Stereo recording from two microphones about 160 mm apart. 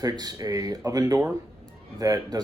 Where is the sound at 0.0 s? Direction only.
25° right (ahead or behind).